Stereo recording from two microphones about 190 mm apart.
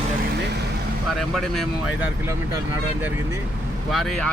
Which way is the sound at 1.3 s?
Centre (ahead or behind).